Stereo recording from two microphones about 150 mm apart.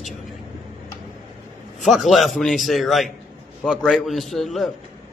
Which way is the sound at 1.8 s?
Centre (ahead or behind).